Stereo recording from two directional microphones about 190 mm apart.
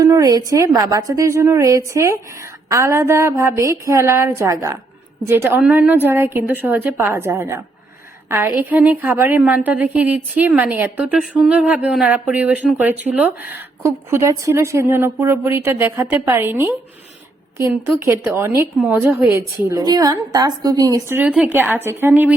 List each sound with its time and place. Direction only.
0.0 s a woman's voice: 15° right (ahead or behind)
19.3 s a woman's voice: 15° right (ahead or behind)